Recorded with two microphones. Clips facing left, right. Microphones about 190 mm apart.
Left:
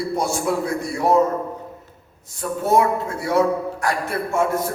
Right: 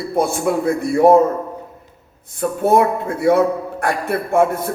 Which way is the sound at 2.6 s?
55° right (ahead or behind).